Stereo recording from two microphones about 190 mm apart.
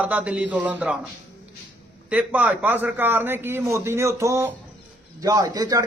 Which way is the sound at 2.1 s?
5° right (ahead or behind).